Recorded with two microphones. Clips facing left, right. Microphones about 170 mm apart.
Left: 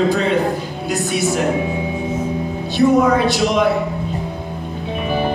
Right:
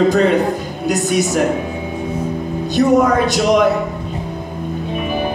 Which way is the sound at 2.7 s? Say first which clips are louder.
Right 1 dB; 40° right (ahead or behind).